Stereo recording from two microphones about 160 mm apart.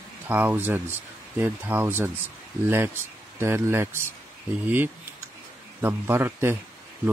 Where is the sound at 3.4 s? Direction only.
15° right (ahead or behind).